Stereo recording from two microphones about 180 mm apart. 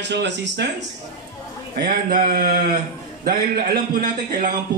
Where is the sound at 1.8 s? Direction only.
55° right (ahead or behind).